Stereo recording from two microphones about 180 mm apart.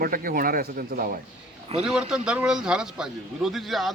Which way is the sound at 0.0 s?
50° right (ahead or behind).